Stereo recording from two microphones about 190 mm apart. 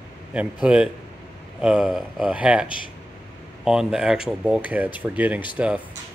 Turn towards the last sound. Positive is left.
turn(degrees=-5)  # may be behind; listen again after turning